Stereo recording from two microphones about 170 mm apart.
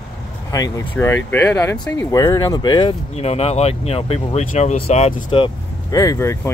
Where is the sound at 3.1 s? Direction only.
35° left (ahead or behind).